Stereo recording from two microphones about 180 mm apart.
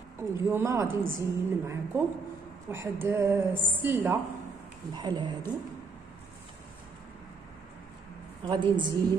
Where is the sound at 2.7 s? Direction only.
15° right (ahead or behind).